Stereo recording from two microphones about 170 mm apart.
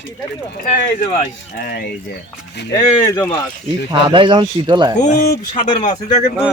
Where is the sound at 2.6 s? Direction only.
80° left.